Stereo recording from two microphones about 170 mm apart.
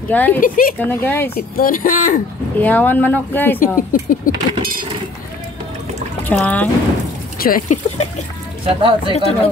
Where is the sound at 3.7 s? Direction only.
55° left (ahead or behind).